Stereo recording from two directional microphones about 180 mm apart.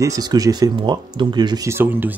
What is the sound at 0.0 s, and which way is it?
Speech, 20° right (ahead or behind).